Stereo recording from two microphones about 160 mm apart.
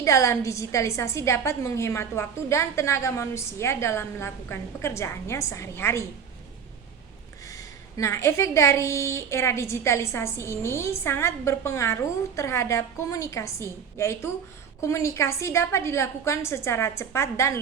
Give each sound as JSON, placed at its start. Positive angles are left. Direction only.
{"t": 0.0, "sound": "a woman's voice", "side_deg": 20}
{"t": 7.5, "sound": "a woman's voice", "side_deg": 20}